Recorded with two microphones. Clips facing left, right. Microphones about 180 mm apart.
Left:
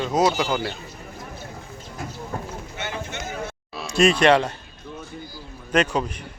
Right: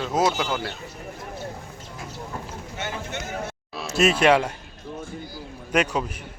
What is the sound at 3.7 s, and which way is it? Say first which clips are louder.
Speech: left 2 dB; 5° right (ahead or behind).